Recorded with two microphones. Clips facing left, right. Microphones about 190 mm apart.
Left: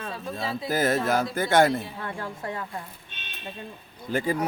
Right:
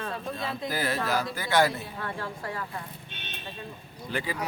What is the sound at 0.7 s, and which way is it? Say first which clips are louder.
Speech: left 6 dB; 45° left (ahead or behind).